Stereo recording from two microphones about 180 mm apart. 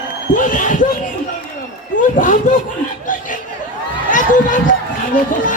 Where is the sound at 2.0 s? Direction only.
45° left (ahead or behind).